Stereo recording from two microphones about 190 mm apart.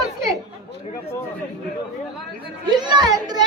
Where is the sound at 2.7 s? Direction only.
25° right (ahead or behind).